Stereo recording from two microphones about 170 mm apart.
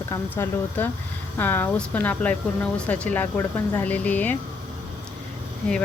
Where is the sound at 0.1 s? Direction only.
15° left (ahead or behind).